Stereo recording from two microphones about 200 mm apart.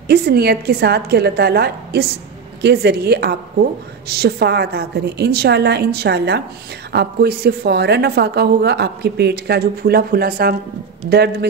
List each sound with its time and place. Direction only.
0.1 s a woman's voice: 55° right (ahead or behind)